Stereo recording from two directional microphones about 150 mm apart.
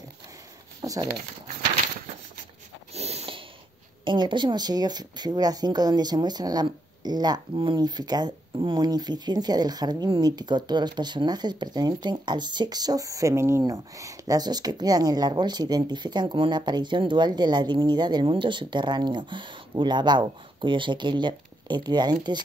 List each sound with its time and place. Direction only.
0.8 s speech: 25° right (ahead or behind)
2.9 s snort: 45° right (ahead or behind)
4.0 s speech: 35° right (ahead or behind)